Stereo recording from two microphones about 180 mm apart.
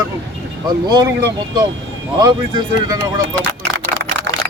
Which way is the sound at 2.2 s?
20° right (ahead or behind).